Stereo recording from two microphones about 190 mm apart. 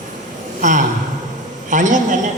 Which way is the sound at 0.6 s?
40° right (ahead or behind).